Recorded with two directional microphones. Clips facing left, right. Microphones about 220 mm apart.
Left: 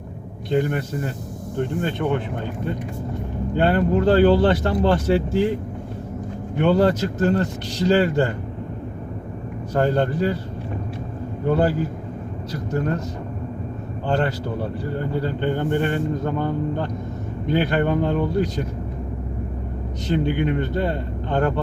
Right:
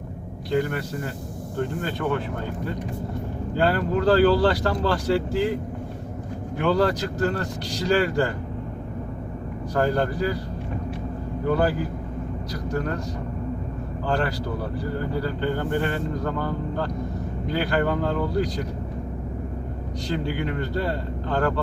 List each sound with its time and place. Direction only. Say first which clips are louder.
0.5 s a man's voice: left 3 dB; 25° left (ahead or behind)
3.6 s a man's voice: left 3 dB; 25° left (ahead or behind)
6.6 s a man's voice: left 4 dB; 25° left (ahead or behind)
9.7 s a man's voice: left 3 dB; 25° left (ahead or behind)
11.4 s a man's voice: left 3 dB; 25° left (ahead or behind)
14.1 s a man's voice: left 3 dB; 25° left (ahead or behind)
20.1 s a man's voice: left 6 dB; 20° left (ahead or behind)